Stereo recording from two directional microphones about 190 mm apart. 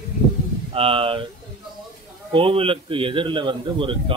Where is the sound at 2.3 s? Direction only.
30° right (ahead or behind).